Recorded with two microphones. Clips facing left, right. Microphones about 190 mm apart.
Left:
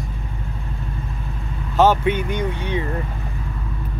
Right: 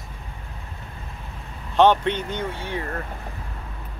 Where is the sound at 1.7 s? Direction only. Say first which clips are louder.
Left 1 dB; 5° left (ahead or behind).